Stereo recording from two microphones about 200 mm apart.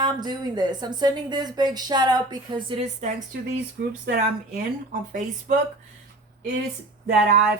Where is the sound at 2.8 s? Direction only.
35° right (ahead or behind).